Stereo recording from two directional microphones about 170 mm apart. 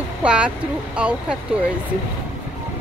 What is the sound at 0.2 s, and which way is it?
Speech, 5° right (ahead or behind).